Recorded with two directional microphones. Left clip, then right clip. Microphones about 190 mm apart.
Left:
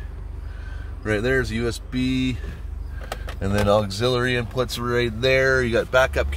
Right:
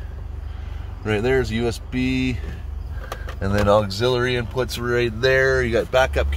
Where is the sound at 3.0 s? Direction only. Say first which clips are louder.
Right 1 dB; 5° left (ahead or behind).